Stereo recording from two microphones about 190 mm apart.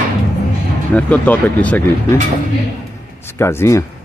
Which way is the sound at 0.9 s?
5° left (ahead or behind).